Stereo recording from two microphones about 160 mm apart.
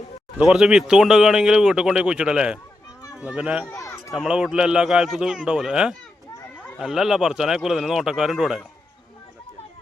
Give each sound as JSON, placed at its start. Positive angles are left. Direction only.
{"t": 0.3, "sound": "speech", "side_deg": 0}
{"t": 3.7, "sound": "run", "side_deg": 20}
{"t": 4.1, "sound": "speech", "side_deg": -5}